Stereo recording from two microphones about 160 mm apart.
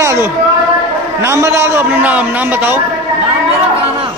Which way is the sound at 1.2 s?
15° right (ahead or behind).